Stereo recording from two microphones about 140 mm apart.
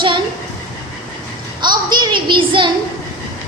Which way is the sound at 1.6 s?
30° right (ahead or behind).